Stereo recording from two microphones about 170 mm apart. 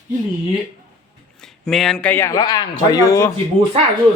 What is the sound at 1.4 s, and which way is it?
Speech, centre (ahead or behind).